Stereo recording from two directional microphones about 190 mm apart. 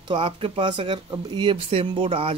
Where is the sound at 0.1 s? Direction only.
25° right (ahead or behind).